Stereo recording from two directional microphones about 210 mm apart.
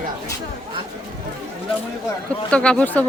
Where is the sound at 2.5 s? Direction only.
5° left (ahead or behind).